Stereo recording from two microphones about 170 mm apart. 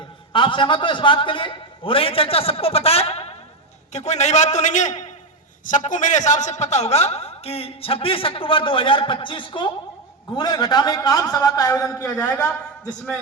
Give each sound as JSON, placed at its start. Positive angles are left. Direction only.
{"t": 0.3, "sound": "a man's voice", "side_deg": 30}